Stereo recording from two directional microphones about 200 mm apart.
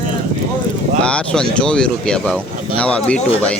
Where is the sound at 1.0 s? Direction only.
5° left (ahead or behind).